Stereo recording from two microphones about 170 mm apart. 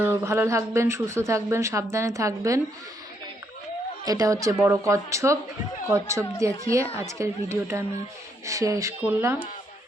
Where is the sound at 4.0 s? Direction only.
20° right (ahead or behind).